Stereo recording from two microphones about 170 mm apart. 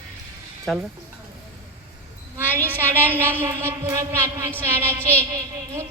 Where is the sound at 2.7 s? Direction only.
10° right (ahead or behind).